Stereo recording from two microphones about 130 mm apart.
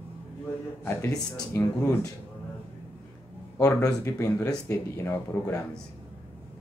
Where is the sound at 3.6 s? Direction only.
25° left (ahead or behind).